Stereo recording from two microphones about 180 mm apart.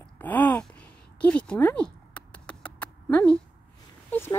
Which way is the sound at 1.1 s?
5° left (ahead or behind).